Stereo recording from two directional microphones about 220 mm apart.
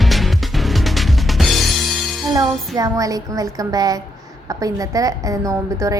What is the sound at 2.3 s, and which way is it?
A woman's voice, 15° right (ahead or behind).